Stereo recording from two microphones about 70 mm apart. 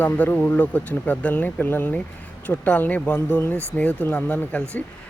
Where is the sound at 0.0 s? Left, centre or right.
Left.